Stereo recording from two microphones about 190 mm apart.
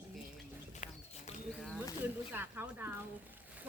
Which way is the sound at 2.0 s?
10° right (ahead or behind).